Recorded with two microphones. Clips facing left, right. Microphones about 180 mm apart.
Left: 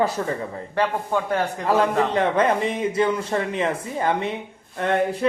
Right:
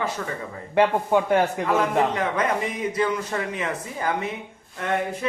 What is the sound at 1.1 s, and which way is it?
Speech, 15° right (ahead or behind).